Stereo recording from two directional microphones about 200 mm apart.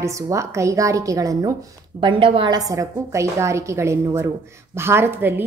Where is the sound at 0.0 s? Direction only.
15° right (ahead or behind).